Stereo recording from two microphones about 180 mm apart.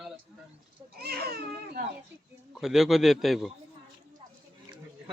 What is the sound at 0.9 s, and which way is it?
Speech, 60° right (ahead or behind).